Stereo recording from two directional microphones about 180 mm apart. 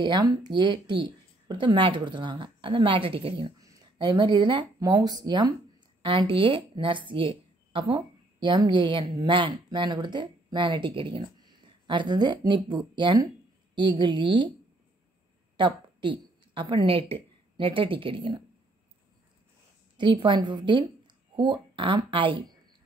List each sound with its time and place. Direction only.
0.0 s speech: 25° right (ahead or behind)
15.5 s a woman's voice: 25° right (ahead or behind)
20.0 s speech: 25° right (ahead or behind)